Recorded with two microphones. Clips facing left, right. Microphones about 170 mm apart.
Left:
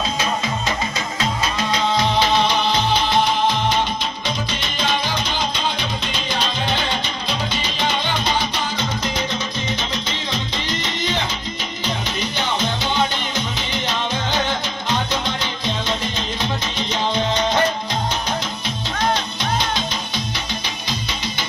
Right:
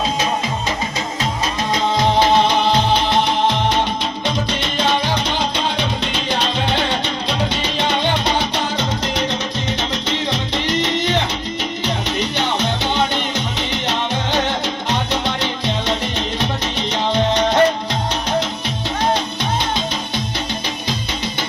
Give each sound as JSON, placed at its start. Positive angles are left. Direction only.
{"t": 8.2, "sound": "music", "side_deg": -70}
{"t": 12.5, "sound": "music", "side_deg": -70}